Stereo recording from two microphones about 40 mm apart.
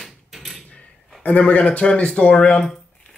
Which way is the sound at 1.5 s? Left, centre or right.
Left.